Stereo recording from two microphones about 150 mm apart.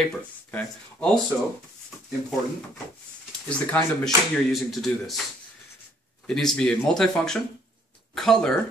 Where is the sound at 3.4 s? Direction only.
5° left (ahead or behind).